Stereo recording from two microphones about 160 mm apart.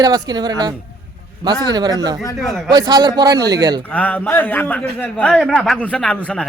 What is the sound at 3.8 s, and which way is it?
Speech, 10° left (ahead or behind).